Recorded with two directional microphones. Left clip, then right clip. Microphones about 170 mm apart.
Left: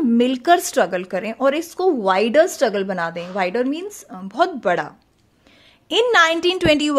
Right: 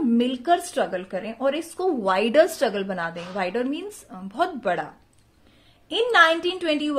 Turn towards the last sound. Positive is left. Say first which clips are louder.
# left 7 dB
turn(degrees=45)  # may be behind; listen again after turning